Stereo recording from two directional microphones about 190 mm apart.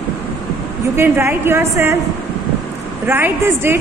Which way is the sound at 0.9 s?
15° right (ahead or behind).